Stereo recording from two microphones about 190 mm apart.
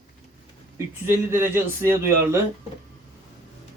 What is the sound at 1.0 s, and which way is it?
Speech, 10° right (ahead or behind).